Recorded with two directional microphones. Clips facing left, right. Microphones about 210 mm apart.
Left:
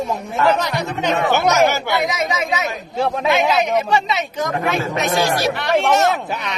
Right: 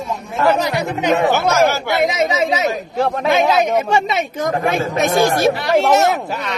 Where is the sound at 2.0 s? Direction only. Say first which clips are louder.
Right 5 dB; 25° right (ahead or behind).